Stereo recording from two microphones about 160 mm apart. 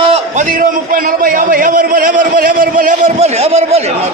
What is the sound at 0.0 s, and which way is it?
A man's voice, 45° right (ahead or behind).